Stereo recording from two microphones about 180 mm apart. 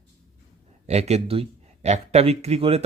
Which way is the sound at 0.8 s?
35° right (ahead or behind).